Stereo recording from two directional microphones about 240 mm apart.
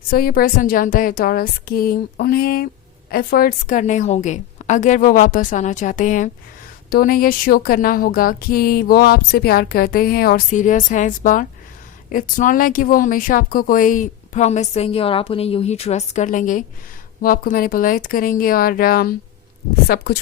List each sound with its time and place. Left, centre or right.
0.1 s speech: left